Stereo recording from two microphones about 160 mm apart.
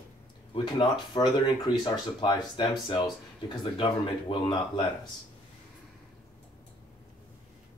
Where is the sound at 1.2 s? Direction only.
25° left (ahead or behind).